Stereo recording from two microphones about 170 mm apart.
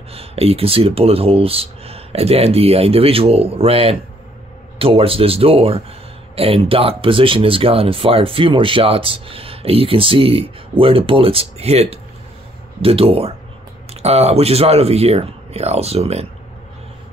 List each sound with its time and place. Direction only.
0.1 s speech: 35° right (ahead or behind)